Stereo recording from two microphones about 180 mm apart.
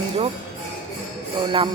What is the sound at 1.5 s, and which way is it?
Music, 25° right (ahead or behind).